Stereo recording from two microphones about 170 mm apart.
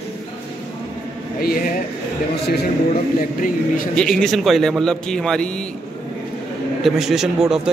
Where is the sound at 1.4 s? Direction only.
60° left (ahead or behind).